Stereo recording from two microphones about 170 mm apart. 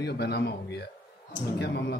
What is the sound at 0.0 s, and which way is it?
A man's voice, 75° left (ahead or behind).